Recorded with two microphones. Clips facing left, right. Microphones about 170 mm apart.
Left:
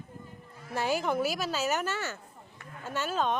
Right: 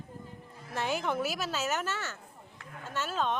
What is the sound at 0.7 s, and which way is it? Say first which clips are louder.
A woman's voice: left 3 dB; 5° left (ahead or behind).